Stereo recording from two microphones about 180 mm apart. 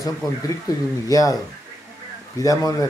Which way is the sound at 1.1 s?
20° left (ahead or behind).